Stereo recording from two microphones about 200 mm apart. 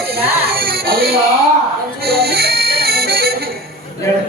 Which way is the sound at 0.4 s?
50° right (ahead or behind).